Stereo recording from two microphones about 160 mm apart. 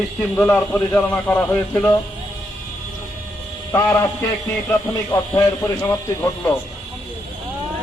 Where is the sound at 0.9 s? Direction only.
10° left (ahead or behind).